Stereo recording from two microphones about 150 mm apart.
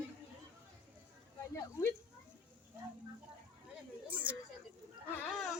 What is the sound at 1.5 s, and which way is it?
Speech, 20° left (ahead or behind).